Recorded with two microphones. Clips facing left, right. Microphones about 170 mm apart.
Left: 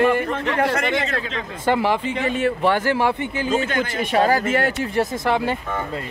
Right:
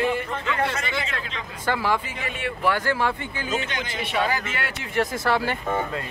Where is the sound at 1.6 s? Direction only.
20° left (ahead or behind).